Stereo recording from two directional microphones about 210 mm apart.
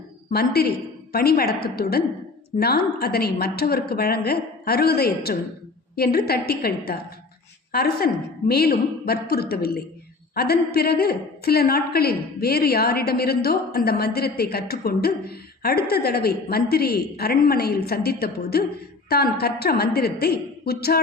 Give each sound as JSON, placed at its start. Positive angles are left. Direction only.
{"t": 0.3, "sound": "a woman's voice", "side_deg": 45}